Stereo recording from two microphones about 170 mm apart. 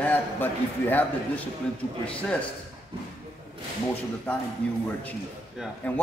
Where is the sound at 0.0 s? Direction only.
10° left (ahead or behind).